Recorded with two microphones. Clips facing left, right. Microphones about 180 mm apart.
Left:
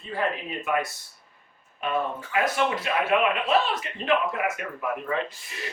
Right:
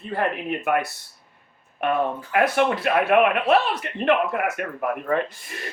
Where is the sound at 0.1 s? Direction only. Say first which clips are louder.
Right 4 dB; 60° right (ahead or behind).